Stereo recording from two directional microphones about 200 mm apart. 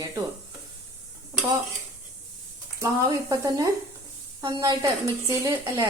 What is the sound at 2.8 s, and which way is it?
A woman's voice, 15° right (ahead or behind).